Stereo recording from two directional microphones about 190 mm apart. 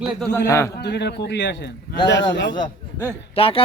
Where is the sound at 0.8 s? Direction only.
60° left (ahead or behind).